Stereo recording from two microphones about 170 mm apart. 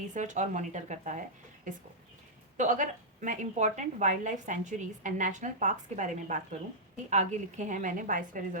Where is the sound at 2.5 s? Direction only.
45° right (ahead or behind).